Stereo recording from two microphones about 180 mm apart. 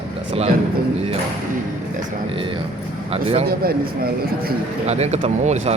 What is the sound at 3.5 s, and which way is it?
Speech, 55° right (ahead or behind).